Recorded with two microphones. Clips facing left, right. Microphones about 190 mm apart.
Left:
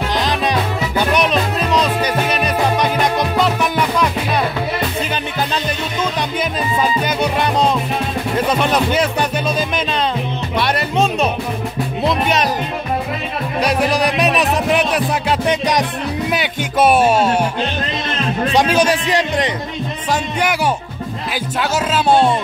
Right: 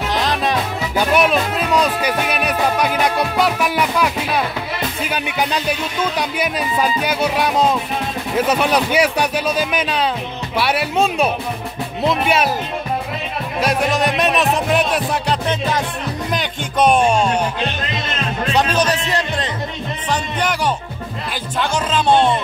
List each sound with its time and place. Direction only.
0.1 s music: centre (ahead or behind)
6.4 s speech: 10° right (ahead or behind)
10.6 s music: 5° right (ahead or behind)
12.0 s speech: 5° right (ahead or behind)
13.6 s music: centre (ahead or behind)
15.4 s a man's voice: 15° left (ahead or behind)
16.3 s music: 5° left (ahead or behind)
18.5 s a man's voice: 10° left (ahead or behind)